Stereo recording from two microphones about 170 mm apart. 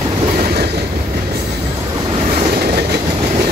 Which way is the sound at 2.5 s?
65° right (ahead or behind).